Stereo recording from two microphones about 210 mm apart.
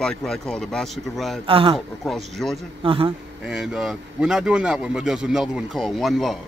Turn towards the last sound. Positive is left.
turn(degrees=0)  # may be behind; listen again after turning